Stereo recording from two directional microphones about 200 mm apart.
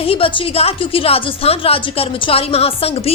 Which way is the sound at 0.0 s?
25° left (ahead or behind).